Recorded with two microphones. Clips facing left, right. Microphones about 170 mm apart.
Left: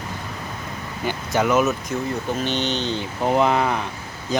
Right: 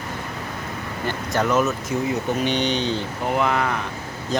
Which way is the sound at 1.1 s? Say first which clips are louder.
Left 2 dB; centre (ahead or behind).